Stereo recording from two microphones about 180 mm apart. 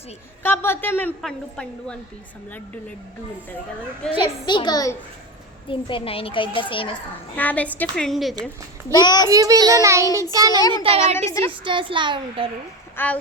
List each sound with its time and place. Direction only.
0.4 s a woman's voice: 10° left (ahead or behind)
4.2 s a child's voice: 25° left (ahead or behind)
7.3 s a woman's voice: 10° left (ahead or behind)
8.9 s a child's voice: 25° left (ahead or behind)
9.3 s a child's voice: 20° right (ahead or behind)
10.6 s a child's voice: 20° left (ahead or behind)
11.6 s a child's voice: 30° right (ahead or behind)
13.0 s a woman's voice: 10° left (ahead or behind)